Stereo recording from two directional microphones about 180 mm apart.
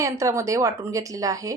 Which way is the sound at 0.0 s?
15° right (ahead or behind).